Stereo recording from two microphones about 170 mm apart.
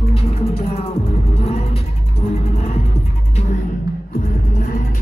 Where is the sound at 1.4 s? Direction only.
35° left (ahead or behind).